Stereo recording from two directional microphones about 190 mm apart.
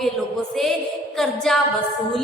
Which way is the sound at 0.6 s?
Centre (ahead or behind).